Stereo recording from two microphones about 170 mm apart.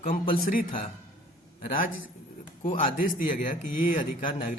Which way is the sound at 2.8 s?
55° left (ahead or behind).